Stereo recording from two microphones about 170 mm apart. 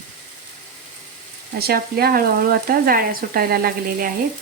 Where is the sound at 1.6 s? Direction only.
65° right (ahead or behind).